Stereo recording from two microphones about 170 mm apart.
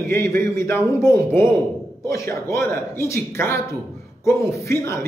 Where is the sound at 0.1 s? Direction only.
15° left (ahead or behind).